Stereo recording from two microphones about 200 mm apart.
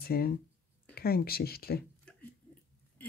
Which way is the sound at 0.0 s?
50° left (ahead or behind).